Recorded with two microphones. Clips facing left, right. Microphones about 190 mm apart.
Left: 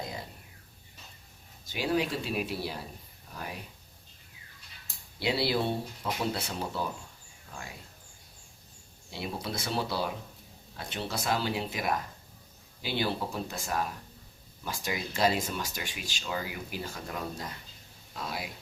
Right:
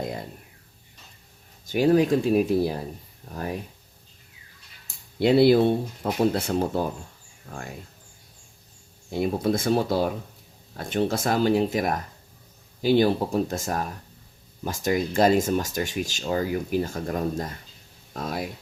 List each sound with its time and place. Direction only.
1.6 s speech: 50° right (ahead or behind)
5.2 s speech: 50° right (ahead or behind)
9.0 s speech: 50° right (ahead or behind)